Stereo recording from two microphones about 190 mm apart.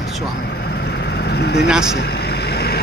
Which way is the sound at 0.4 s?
55° left (ahead or behind).